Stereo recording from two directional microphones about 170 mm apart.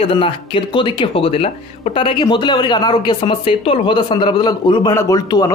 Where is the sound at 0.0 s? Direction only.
30° left (ahead or behind).